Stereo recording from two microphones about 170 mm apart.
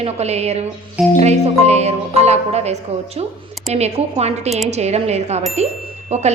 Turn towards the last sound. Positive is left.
turn(degrees=-40)  # may be behind; listen again after turning